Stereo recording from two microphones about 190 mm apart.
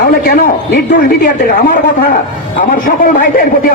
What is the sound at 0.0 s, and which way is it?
A man's voice, 55° left (ahead or behind).